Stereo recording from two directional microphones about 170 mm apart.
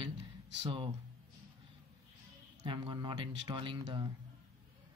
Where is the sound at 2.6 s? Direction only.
30° right (ahead or behind).